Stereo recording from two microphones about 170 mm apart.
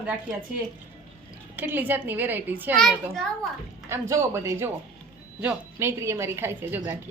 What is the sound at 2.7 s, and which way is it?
Speech, centre (ahead or behind).